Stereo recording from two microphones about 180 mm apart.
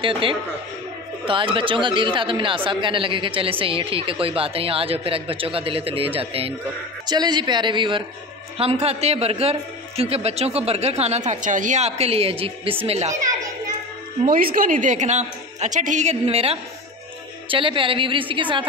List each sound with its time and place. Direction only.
0.0 s a man's voice: 30° right (ahead or behind)
14.2 s a woman's voice: 50° right (ahead or behind); by 18.7 s 25° right (ahead or behind)